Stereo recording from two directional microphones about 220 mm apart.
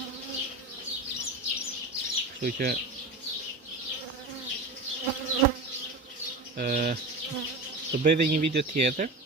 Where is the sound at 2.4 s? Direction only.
40° right (ahead or behind).